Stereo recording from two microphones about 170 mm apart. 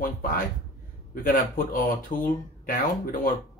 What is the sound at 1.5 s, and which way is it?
A man's voice, 55° left (ahead or behind).